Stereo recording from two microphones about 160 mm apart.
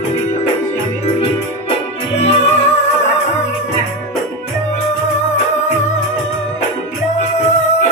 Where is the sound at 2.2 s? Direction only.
45° left (ahead or behind).